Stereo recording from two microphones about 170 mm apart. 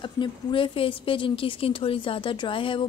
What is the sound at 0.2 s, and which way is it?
A woman's voice, 30° left (ahead or behind).